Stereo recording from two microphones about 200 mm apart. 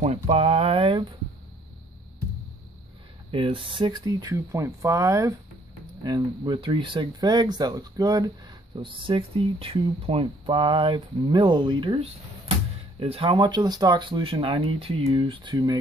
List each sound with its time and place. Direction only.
0.0 s speech: 30° right (ahead or behind)
3.3 s speech: 25° right (ahead or behind)